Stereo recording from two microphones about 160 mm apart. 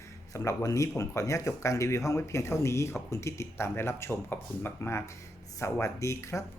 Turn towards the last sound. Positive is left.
turn(degrees=15)  # may be behind; listen again after turning